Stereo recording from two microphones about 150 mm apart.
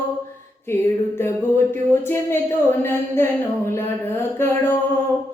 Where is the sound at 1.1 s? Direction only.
15° left (ahead or behind).